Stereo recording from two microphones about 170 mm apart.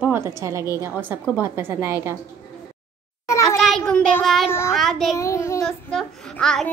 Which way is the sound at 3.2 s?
20° left (ahead or behind).